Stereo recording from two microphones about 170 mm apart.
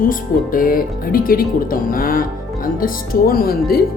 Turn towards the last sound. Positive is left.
turn(degrees=65)  # may be behind; listen again after turning